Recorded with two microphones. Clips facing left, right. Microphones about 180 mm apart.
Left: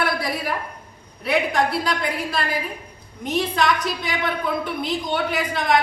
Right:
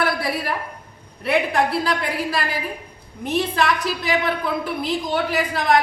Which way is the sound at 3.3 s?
5° right (ahead or behind).